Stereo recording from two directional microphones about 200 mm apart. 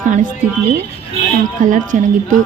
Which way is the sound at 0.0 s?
40° right (ahead or behind).